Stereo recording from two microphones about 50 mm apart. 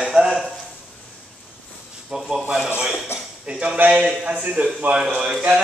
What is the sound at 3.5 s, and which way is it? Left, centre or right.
A man's voice, right.